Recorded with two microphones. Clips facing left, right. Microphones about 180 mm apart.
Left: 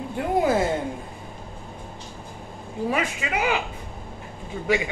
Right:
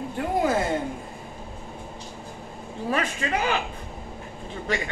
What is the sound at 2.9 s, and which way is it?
Speech, 10° left (ahead or behind).